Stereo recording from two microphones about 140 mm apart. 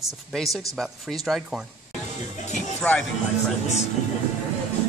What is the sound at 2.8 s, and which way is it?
Speech, 10° left (ahead or behind).